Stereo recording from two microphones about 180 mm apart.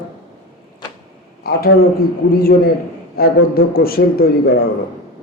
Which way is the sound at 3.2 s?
55° left (ahead or behind).